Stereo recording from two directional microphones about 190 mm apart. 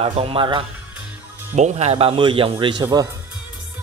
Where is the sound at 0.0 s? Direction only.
30° right (ahead or behind).